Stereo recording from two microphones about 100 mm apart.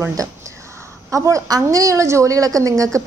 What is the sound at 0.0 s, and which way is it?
A woman's voice, 30° right (ahead or behind).